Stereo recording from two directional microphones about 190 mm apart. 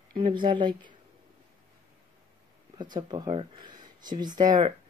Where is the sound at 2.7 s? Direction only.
25° right (ahead or behind).